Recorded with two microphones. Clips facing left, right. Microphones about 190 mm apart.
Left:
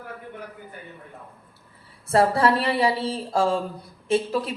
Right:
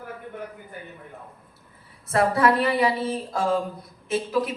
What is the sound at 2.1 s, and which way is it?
A man's voice, 30° left (ahead or behind).